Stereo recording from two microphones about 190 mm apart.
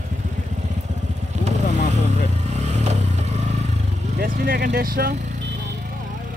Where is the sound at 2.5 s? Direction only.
35° right (ahead or behind).